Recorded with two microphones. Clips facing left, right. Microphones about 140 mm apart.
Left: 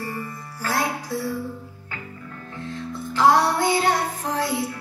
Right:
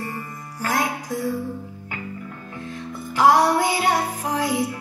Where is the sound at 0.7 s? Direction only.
15° right (ahead or behind).